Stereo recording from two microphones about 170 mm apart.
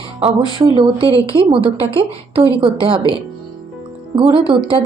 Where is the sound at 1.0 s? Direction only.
20° left (ahead or behind).